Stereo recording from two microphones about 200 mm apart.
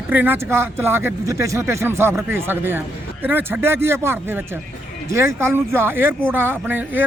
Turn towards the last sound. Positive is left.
turn(degrees=-10)  # may be behind; listen again after turning